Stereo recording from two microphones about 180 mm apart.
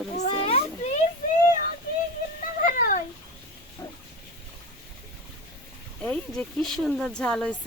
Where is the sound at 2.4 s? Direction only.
50° left (ahead or behind).